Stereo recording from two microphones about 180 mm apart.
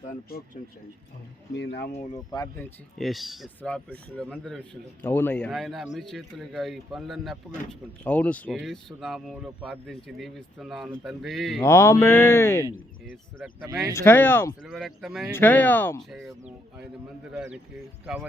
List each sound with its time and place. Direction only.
0.3 s speech: 55° left (ahead or behind)
1.5 s speech: 65° left (ahead or behind)
2.6 s a man's voice: 5° left (ahead or behind)
11.6 s speech: 15° left (ahead or behind)
13.7 s speech: 20° right (ahead or behind)
13.9 s speech: 10° left (ahead or behind)
14.6 s a man's voice: centre (ahead or behind)
15.3 s a man's voice: 10° left (ahead or behind); by 18.3 s 5° right (ahead or behind)